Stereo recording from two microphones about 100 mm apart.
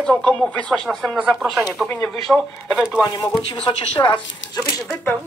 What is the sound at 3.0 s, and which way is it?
Speech, 45° left (ahead or behind).